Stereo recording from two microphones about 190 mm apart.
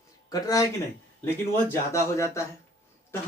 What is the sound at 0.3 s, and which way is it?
Speech, 20° left (ahead or behind).